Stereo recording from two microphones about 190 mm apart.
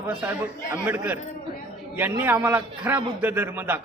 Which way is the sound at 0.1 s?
10° right (ahead or behind).